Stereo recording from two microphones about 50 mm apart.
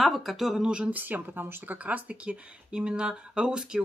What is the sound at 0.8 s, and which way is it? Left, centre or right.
Speech, right.